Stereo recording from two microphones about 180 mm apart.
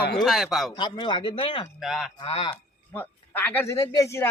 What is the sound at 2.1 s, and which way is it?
Speech, 30° left (ahead or behind).